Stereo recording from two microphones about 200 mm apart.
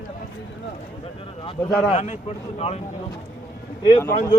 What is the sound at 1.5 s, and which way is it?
Speech, 15° left (ahead or behind).